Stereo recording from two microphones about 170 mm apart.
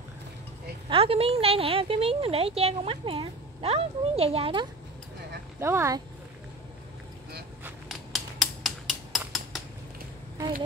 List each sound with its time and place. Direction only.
0.8 s a woman's voice: 35° right (ahead or behind)
5.6 s speech: 15° right (ahead or behind)
7.6 s a sound: centre (ahead or behind)